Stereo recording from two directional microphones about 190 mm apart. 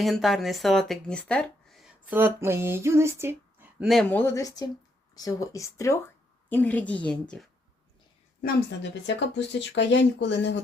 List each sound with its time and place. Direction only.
0.0 s speech: centre (ahead or behind)
4.1 s a woman's voice: 10° left (ahead or behind)
8.8 s speech: 70° left (ahead or behind)